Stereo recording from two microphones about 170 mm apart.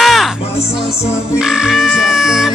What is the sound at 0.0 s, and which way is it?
Music, centre (ahead or behind).